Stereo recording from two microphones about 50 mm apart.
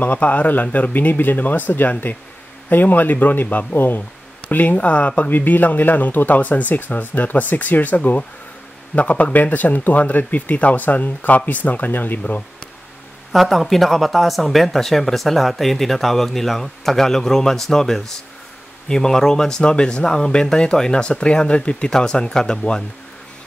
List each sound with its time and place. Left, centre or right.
0.0 s speech: left
3.7 s speech: left
4.7 s speech: left
5.3 s speech: left
13.3 s speech: centre